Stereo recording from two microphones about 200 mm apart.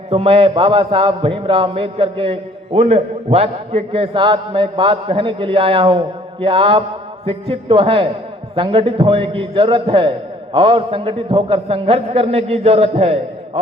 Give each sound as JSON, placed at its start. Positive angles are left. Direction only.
{"t": 0.1, "sound": "a man's voice", "side_deg": -30}